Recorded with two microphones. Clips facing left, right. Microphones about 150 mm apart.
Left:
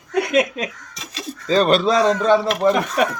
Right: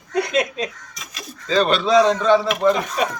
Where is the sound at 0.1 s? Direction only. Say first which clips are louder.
Left 3 dB; 55° left (ahead or behind).